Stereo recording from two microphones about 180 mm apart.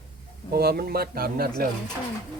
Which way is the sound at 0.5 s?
60° right (ahead or behind).